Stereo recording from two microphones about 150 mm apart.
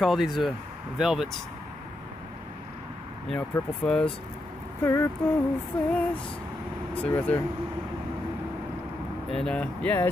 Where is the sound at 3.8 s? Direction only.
5° left (ahead or behind).